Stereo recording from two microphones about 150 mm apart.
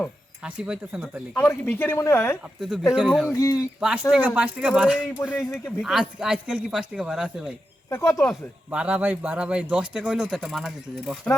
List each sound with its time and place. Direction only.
0.4 s speech: 5° right (ahead or behind)
1.3 s speech: 15° left (ahead or behind)
2.6 s speech: centre (ahead or behind)
3.2 s speech: 20° left (ahead or behind)
3.8 s speech: 5° right (ahead or behind)
7.9 s speech: 15° left (ahead or behind)
8.7 s speech: 10° right (ahead or behind)